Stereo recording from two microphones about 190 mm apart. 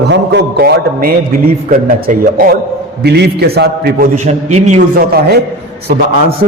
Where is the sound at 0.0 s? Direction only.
65° right (ahead or behind); by 4.8 s 35° right (ahead or behind).